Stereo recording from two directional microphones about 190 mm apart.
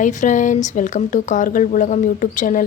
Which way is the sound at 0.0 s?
40° left (ahead or behind).